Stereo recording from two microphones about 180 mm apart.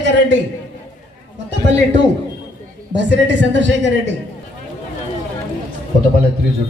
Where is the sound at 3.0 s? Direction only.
85° right.